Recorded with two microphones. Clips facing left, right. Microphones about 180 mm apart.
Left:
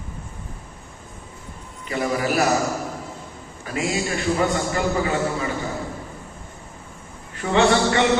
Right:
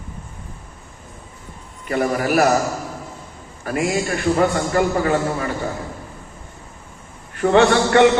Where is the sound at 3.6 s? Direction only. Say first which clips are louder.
Right 4 dB; 55° right (ahead or behind).